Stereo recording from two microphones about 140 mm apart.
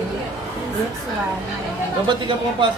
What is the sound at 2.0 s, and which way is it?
Speech, 35° right (ahead or behind).